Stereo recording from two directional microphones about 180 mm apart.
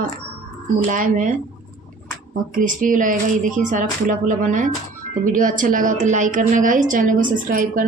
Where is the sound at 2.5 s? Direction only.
50° right (ahead or behind).